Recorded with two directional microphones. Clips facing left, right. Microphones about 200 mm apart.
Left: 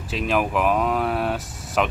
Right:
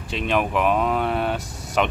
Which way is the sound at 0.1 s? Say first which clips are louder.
Even; 5° left (ahead or behind).